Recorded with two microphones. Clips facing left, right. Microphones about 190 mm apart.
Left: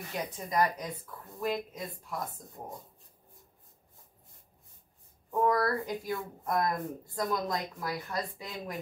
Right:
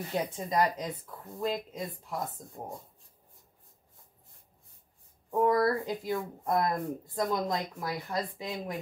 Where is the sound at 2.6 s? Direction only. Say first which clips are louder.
Right 3 dB; 40° right (ahead or behind).